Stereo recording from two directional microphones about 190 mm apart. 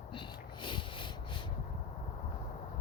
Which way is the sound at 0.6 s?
25° left (ahead or behind).